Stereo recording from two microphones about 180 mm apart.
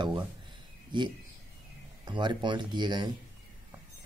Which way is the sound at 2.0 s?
25° right (ahead or behind).